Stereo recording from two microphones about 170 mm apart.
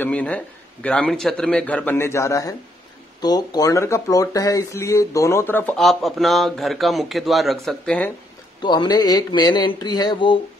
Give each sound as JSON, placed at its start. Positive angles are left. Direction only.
{"t": 0.0, "sound": "speech", "side_deg": 10}
{"t": 8.6, "sound": "speech", "side_deg": 25}